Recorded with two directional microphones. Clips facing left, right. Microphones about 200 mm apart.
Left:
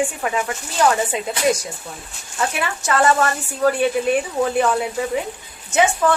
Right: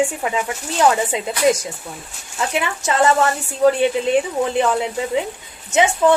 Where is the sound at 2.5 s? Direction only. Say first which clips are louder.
Right 4 dB; 20° right (ahead or behind).